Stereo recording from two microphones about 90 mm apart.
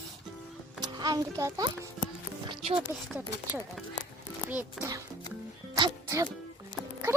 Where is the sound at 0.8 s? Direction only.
45° right (ahead or behind).